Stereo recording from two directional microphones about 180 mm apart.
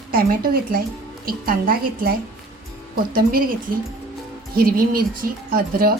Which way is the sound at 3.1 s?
55° right (ahead or behind).